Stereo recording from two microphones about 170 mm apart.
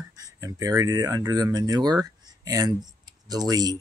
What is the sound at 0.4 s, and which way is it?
Speech, 20° right (ahead or behind).